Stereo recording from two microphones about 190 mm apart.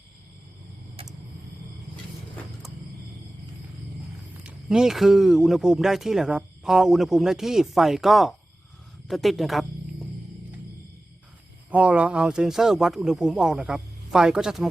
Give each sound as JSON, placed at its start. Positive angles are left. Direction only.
{"t": 1.0, "sound": "a sound", "side_deg": -30}
{"t": 4.4, "sound": "speech", "side_deg": -5}
{"t": 9.0, "sound": "music", "side_deg": 0}
{"t": 11.7, "sound": "speech", "side_deg": -5}